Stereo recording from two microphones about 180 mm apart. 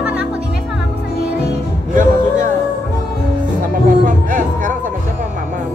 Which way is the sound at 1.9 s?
45° right (ahead or behind).